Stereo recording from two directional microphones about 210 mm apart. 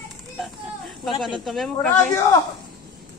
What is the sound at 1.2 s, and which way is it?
Speech, centre (ahead or behind).